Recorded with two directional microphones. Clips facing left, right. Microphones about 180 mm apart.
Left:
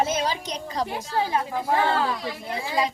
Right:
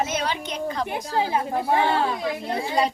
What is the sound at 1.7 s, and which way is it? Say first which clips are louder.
Speech: right 1 dB; 20° right (ahead or behind).